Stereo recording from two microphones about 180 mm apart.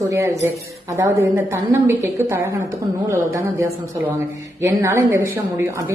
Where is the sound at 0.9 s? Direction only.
20° right (ahead or behind).